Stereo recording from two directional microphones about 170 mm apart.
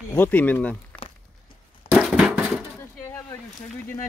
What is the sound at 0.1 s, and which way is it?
Speech, 10° left (ahead or behind).